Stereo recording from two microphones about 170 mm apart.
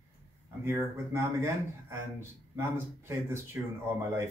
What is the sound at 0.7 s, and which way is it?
Speech, 15° right (ahead or behind).